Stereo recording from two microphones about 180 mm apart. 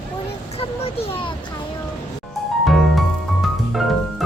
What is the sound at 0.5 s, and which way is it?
Speech, 35° left (ahead or behind).